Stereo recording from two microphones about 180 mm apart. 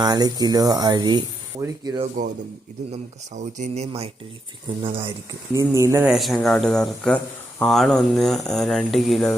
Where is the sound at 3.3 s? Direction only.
40° right (ahead or behind).